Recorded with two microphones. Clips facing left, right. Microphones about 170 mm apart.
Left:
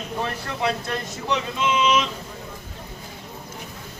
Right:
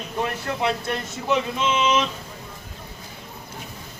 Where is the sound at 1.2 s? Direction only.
25° right (ahead or behind).